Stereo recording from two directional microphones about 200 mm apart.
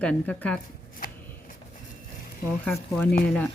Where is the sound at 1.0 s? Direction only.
45° left (ahead or behind).